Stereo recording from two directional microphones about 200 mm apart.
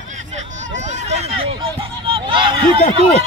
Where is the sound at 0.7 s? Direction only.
35° right (ahead or behind).